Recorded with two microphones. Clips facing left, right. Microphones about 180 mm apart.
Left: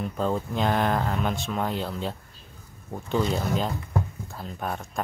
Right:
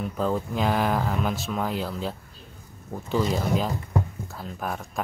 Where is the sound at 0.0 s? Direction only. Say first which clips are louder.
Right 1 dB; centre (ahead or behind).